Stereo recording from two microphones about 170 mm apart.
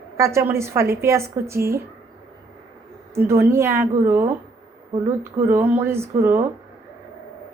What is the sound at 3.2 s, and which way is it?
Speech, 15° right (ahead or behind).